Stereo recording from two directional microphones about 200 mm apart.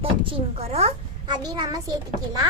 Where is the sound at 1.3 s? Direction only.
20° right (ahead or behind).